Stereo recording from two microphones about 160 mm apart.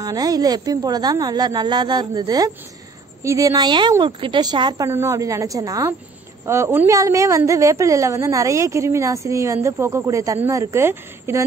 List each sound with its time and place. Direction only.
0.0 s a woman's voice: 25° right (ahead or behind)
4.8 s a woman's voice: 15° right (ahead or behind)